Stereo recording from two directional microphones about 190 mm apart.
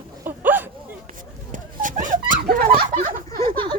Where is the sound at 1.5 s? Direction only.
45° right (ahead or behind).